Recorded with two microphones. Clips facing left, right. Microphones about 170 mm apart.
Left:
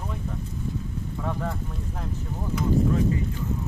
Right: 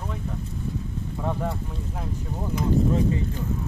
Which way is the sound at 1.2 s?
15° right (ahead or behind).